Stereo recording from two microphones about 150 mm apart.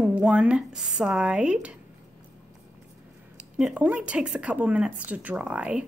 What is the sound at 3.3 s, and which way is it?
Speech, 10° right (ahead or behind).